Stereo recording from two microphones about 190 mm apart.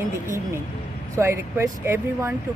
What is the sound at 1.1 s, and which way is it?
Speech, 15° right (ahead or behind).